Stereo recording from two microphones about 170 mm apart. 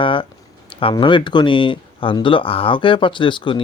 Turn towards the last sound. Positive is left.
turn(degrees=30)  # may be behind; listen again after turning